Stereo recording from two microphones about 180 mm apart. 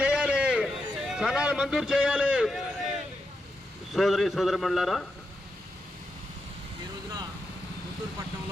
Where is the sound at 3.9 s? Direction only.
Centre (ahead or behind).